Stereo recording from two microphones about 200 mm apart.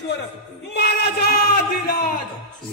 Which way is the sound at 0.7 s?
55° left (ahead or behind).